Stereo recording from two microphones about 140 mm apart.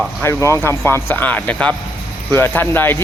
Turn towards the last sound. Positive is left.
turn(degrees=15)  # may be behind; listen again after turning